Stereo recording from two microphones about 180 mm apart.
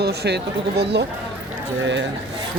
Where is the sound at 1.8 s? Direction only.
90° right.